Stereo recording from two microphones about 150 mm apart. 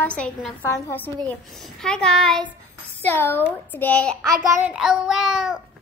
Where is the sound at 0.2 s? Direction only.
5° left (ahead or behind).